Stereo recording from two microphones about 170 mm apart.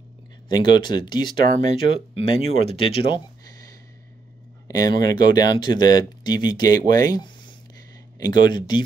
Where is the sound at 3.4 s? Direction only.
20° left (ahead or behind).